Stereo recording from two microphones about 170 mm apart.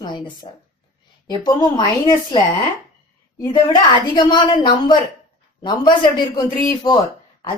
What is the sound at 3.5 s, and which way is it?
A woman's voice, 25° left (ahead or behind).